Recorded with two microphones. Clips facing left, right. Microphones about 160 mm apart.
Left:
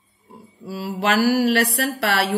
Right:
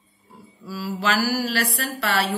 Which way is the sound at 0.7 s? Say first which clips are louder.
Left 3 dB; 60° left (ahead or behind).